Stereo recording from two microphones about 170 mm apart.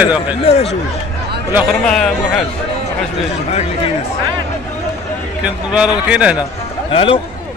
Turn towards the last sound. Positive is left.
turn(degrees=30)  # may be behind; listen again after turning